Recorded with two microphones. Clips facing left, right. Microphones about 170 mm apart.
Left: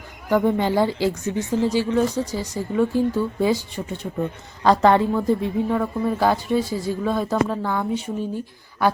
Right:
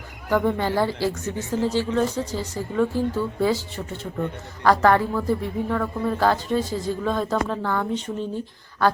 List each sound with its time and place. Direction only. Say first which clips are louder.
0.3 s speech: left 3 dB; 15° left (ahead or behind)